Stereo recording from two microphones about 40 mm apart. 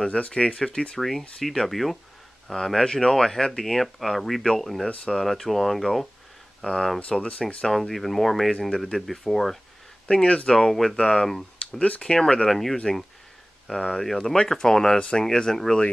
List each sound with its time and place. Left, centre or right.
0.1 s speech: left
0.9 s speech: centre
7.1 s speech: left
7.4 s speech: centre
10.2 s speech: left
10.5 s speech: centre
11.0 s speech: centre
11.2 s speech: centre
12.4 s speech: centre
15.0 s speech: left